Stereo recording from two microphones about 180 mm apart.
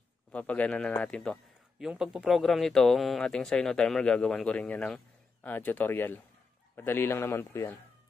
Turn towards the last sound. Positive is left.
turn(degrees=15)  # may be behind; listen again after turning